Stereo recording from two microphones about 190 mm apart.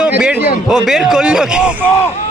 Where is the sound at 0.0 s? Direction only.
5° right (ahead or behind).